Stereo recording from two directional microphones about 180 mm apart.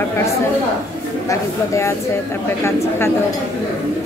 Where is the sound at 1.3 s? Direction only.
15° left (ahead or behind).